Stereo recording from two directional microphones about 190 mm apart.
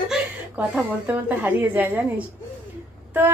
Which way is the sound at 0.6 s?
10° right (ahead or behind).